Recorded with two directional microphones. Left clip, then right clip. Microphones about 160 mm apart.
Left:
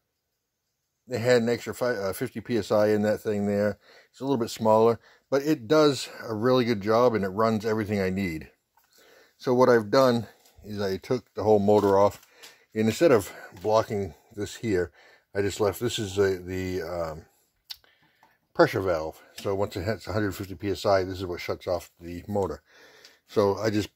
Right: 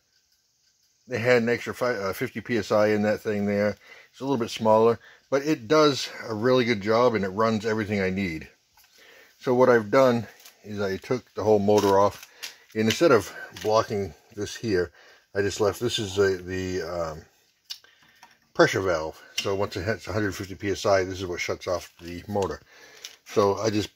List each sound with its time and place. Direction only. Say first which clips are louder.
1.1 s speech: right 1 dB; 15° left (ahead or behind)
18.5 s speech: right 1 dB; 20° left (ahead or behind)